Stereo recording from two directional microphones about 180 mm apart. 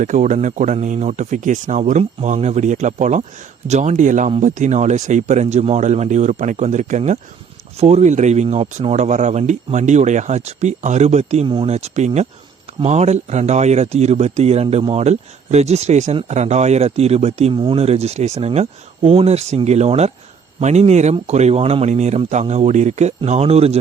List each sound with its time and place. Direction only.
0.0 s speech: 45° right (ahead or behind)